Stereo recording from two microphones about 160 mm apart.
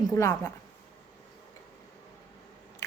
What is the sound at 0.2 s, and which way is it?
Speech, 20° left (ahead or behind).